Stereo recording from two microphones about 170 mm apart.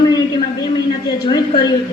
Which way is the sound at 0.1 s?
25° left (ahead or behind).